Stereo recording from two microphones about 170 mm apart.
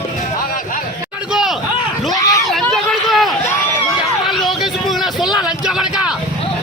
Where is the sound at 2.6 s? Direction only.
Centre (ahead or behind).